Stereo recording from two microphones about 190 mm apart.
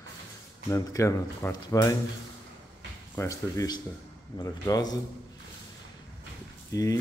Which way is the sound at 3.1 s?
15° left (ahead or behind).